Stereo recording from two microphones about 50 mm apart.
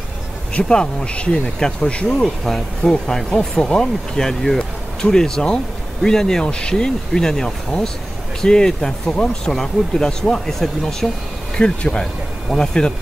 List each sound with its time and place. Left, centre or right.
0.6 s speech: centre
2.2 s speech: centre
11.5 s speech: centre